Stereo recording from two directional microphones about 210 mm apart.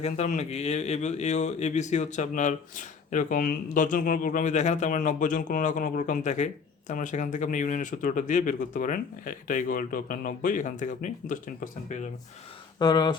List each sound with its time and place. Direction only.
0.0 s speech: 35° left (ahead or behind)
12.8 s speech: 20° left (ahead or behind)